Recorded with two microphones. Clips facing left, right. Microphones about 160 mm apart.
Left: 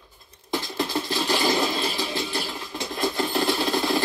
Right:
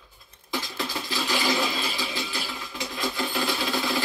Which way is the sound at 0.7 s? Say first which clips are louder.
Left 5 dB; 45° left (ahead or behind).